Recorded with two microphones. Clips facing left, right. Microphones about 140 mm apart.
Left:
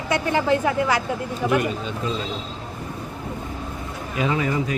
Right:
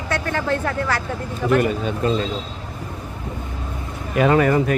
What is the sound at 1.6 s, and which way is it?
Speech, 50° right (ahead or behind).